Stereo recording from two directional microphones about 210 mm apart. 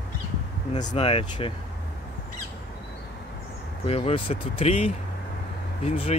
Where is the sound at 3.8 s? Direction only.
30° left (ahead or behind).